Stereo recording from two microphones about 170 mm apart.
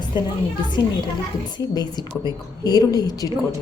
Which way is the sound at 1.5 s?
25° left (ahead or behind).